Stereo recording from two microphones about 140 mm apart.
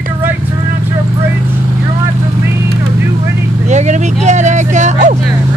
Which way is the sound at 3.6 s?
55° right (ahead or behind).